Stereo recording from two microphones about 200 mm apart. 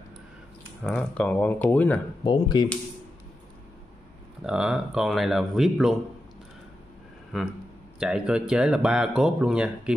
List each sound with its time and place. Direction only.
0.8 s speech: 5° left (ahead or behind)
2.2 s speech: 20° left (ahead or behind)
4.4 s speech: 5° right (ahead or behind)
8.0 s speech: 5° right (ahead or behind)